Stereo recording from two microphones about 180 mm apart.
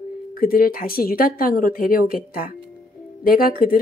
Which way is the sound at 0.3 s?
55° left (ahead or behind).